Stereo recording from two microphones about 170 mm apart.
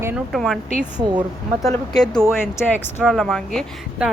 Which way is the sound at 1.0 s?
25° right (ahead or behind).